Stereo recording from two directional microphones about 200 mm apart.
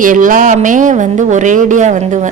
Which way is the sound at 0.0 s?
40° right (ahead or behind).